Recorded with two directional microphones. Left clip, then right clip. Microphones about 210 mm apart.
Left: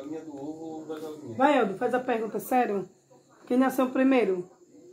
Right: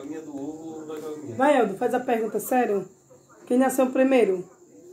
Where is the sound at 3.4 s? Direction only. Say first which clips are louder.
Right 4 dB; 20° right (ahead or behind).